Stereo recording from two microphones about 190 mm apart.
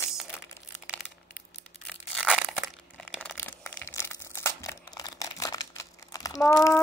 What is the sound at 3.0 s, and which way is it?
Crumpling, 5° left (ahead or behind).